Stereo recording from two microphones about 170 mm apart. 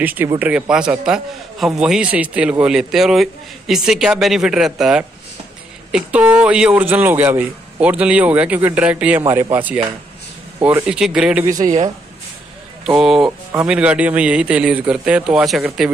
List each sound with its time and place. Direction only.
0.0 s a man's voice: 10° right (ahead or behind)
11.4 s a man's voice: 20° right (ahead or behind)
12.8 s a man's voice: centre (ahead or behind)